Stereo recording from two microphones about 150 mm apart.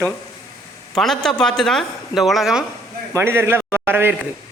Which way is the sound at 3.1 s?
15° right (ahead or behind).